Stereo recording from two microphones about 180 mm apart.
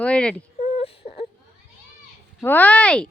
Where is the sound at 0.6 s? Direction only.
30° left (ahead or behind).